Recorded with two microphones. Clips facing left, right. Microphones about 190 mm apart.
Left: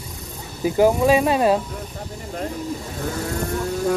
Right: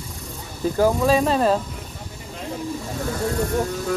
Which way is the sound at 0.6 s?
15° left (ahead or behind).